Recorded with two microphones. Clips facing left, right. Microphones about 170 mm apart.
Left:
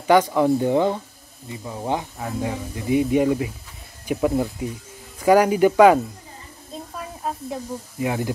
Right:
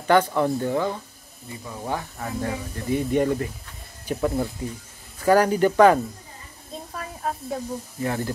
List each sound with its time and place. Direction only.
0.0 s speech: 10° left (ahead or behind)
2.2 s speech: 5° left (ahead or behind)
8.0 s speech: 10° left (ahead or behind)